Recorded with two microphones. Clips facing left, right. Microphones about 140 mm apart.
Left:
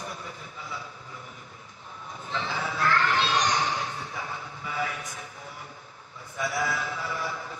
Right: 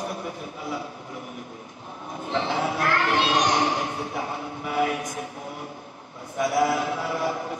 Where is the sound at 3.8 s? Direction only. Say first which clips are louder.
Right 6 dB; 20° right (ahead or behind).